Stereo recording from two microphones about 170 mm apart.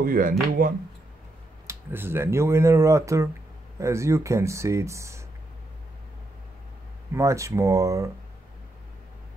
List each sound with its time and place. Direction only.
0.0 s speech: 55° right (ahead or behind)
1.7 s speech: 15° right (ahead or behind)
7.2 s speech: 20° right (ahead or behind)